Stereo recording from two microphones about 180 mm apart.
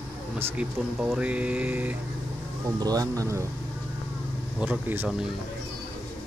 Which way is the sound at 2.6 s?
20° right (ahead or behind).